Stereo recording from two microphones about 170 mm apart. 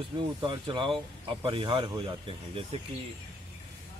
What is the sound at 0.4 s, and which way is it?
A man's voice, 30° right (ahead or behind).